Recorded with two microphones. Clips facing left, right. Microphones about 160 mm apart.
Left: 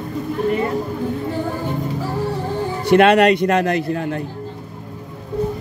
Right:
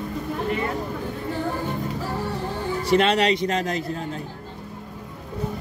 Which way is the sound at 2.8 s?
65° left (ahead or behind).